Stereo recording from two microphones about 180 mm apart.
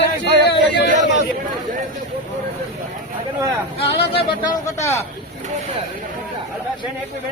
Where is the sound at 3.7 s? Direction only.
30° left (ahead or behind).